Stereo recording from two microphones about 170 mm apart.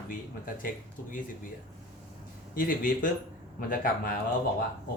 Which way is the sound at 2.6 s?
55° left (ahead or behind).